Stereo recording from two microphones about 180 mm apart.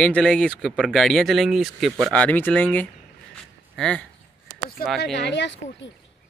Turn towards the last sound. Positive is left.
turn(degrees=80)